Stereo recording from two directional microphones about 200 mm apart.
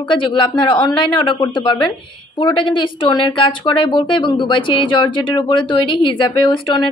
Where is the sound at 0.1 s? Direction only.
25° left (ahead or behind).